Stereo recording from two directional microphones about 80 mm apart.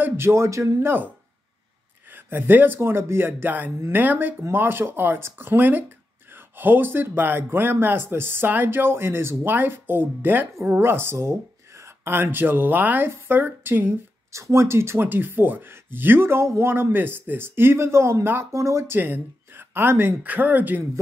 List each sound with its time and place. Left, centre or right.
0.0 s speech: right
2.1 s speech: right
14.3 s speech: right
18.9 s speech: right